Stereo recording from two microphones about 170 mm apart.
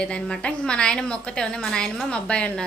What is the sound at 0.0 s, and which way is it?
A woman's voice, 5° left (ahead or behind).